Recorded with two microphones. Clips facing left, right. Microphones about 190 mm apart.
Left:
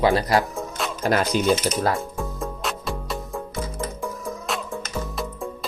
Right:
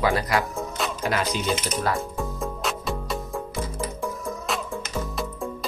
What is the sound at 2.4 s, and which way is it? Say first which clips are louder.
Music: even; centre (ahead or behind).